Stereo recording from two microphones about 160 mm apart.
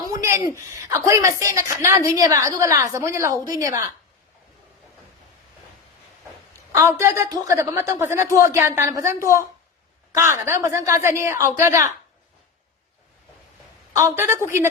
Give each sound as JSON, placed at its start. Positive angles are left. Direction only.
{"t": 0.1, "sound": "a sound", "side_deg": -20}
{"t": 0.7, "sound": "a woman's voice", "side_deg": -15}
{"t": 6.7, "sound": "a woman's voice", "side_deg": -15}
{"t": 13.9, "sound": "a woman's voice", "side_deg": -15}